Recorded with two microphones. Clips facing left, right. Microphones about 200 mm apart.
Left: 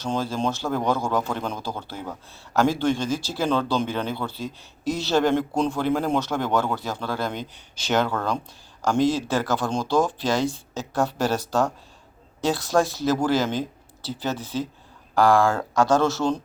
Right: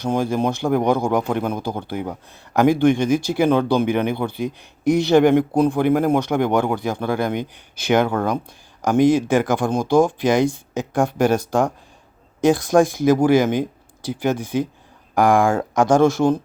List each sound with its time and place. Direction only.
0.0 s speech: 15° right (ahead or behind)